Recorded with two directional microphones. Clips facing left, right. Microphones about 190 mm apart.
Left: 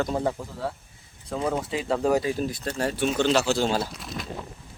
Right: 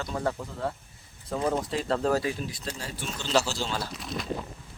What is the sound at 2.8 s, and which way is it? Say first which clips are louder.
Speech: left 13 dB; 65° left (ahead or behind).